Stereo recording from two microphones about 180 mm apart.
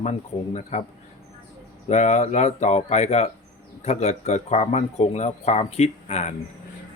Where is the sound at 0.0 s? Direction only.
40° left (ahead or behind).